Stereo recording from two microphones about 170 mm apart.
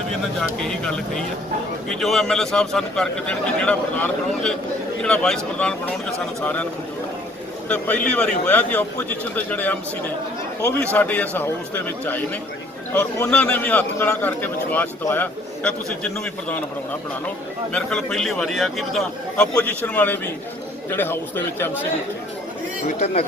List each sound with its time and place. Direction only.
0.6 s a man's voice: 5° left (ahead or behind)
7.7 s a man's voice: 10° left (ahead or behind)
10.9 s a man's voice: 10° left (ahead or behind)